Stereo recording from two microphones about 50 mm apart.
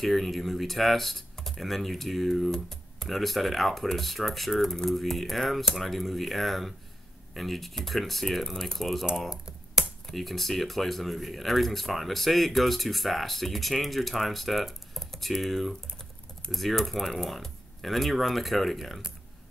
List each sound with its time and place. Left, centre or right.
0.0 s speech: centre
10.0 s speech: centre